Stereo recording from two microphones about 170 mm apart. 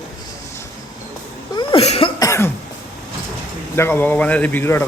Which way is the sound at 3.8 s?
15° left (ahead or behind).